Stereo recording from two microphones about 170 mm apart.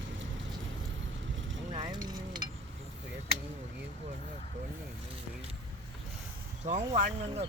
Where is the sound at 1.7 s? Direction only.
25° right (ahead or behind).